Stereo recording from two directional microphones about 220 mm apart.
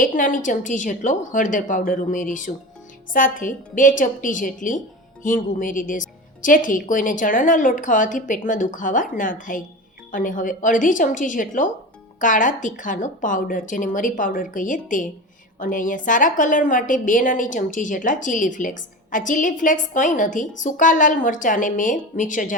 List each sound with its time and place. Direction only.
0.0 s a woman's voice: 40° left (ahead or behind)